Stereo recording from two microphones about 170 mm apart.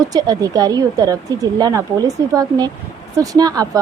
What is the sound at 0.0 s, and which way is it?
A woman's voice, 20° right (ahead or behind).